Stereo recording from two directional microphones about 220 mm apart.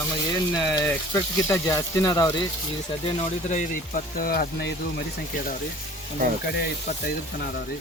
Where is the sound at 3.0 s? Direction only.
30° left (ahead or behind); by 4.7 s 50° left (ahead or behind).